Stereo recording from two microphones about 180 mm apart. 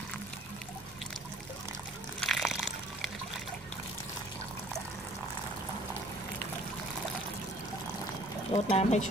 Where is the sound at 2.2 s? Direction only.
Centre (ahead or behind).